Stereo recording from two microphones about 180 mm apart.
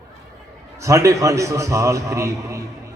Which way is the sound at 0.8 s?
15° right (ahead or behind).